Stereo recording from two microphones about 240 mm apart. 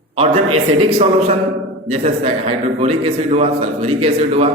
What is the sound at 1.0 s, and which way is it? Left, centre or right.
A man's voice, right.